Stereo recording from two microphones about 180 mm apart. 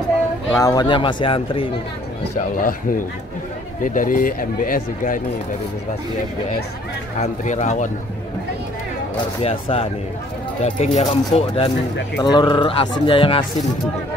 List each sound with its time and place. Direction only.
0.6 s speech: 20° left (ahead or behind)
2.3 s speech: 50° left (ahead or behind)
7.2 s speech: 40° left (ahead or behind)
9.4 s speech: 35° left (ahead or behind)
12.2 s speech: 25° left (ahead or behind)